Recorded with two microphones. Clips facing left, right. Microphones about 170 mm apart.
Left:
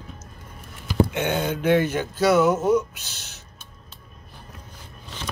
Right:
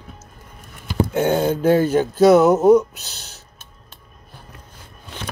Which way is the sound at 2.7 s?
35° right (ahead or behind).